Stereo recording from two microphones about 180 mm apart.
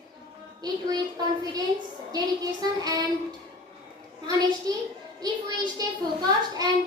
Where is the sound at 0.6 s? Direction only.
20° right (ahead or behind).